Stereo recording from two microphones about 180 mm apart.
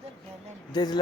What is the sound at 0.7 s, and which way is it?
Speech, 25° left (ahead or behind).